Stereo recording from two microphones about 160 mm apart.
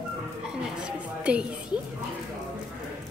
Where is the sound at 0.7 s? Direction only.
5° right (ahead or behind).